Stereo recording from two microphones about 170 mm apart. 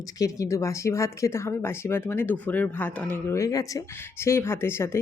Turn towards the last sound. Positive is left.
turn(degrees=15)  # may be behind; listen again after turning